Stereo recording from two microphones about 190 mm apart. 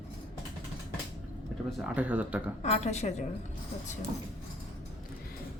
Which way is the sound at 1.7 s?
5° right (ahead or behind).